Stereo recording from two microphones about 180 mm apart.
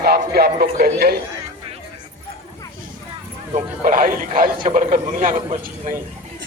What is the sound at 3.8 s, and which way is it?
A man's voice, 50° right (ahead or behind).